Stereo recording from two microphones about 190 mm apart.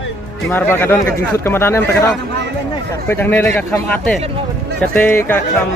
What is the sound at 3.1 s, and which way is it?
Speech, 10° left (ahead or behind).